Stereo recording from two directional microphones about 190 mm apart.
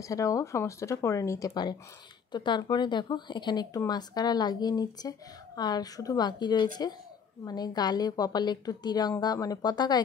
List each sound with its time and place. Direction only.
0.0 s speech: 15° left (ahead or behind)